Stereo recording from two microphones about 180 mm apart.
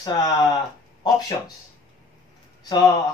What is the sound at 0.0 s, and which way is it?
Speech, 25° left (ahead or behind).